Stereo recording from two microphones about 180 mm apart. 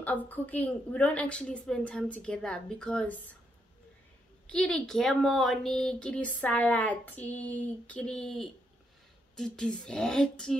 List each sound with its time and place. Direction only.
0.0 s a woman's voice: 10° left (ahead or behind)
4.5 s a woman's voice: 5° left (ahead or behind)